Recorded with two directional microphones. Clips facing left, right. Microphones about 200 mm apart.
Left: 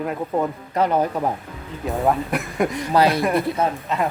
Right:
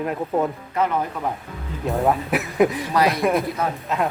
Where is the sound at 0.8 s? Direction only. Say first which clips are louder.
Left 2 dB; 35° left (ahead or behind).